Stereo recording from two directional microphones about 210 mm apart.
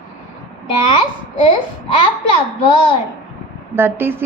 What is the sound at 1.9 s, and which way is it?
Speech, 25° left (ahead or behind).